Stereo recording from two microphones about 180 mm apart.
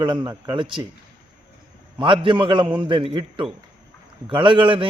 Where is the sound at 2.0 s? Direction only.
30° right (ahead or behind).